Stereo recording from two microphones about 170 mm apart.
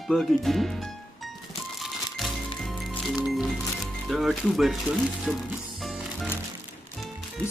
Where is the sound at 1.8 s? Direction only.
Centre (ahead or behind).